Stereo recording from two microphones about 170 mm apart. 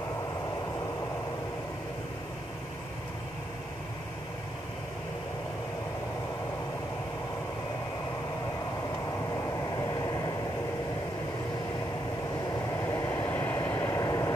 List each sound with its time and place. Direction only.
9.3 s vehicle: 25° left (ahead or behind)
12.8 s vehicle: 20° left (ahead or behind)